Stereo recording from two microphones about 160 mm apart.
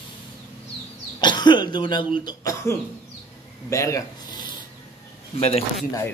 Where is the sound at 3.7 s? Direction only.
20° left (ahead or behind).